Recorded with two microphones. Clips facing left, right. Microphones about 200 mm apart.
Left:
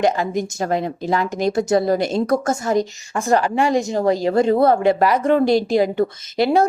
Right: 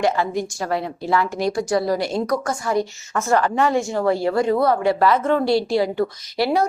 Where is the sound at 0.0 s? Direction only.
20° left (ahead or behind).